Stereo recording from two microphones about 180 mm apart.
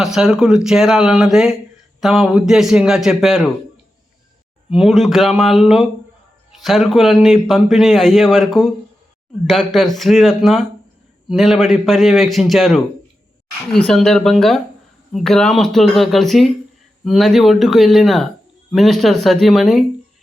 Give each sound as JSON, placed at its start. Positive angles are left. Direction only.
{"t": 0.0, "sound": "a man's voice", "side_deg": 0}
{"t": 4.7, "sound": "a man's voice", "side_deg": 0}